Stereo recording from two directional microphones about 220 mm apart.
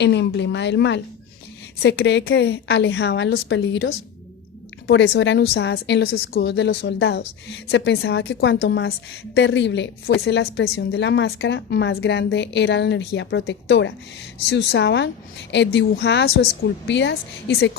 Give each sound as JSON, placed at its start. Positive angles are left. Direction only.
{"t": 0.0, "sound": "a woman's voice", "side_deg": 50}